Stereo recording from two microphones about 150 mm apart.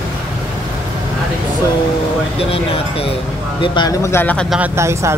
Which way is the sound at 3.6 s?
30° left (ahead or behind).